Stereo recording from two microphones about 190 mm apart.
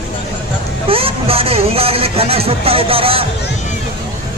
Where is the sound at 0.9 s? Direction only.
30° right (ahead or behind).